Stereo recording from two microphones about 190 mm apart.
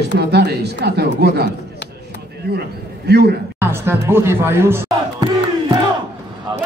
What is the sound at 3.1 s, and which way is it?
Speech, 60° right (ahead or behind).